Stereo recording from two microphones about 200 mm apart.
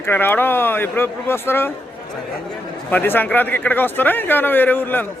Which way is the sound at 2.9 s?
10° left (ahead or behind).